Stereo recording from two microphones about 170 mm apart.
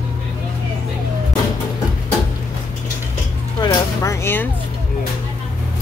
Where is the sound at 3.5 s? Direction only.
20° left (ahead or behind).